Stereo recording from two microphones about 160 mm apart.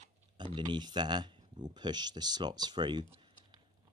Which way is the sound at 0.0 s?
35° right (ahead or behind).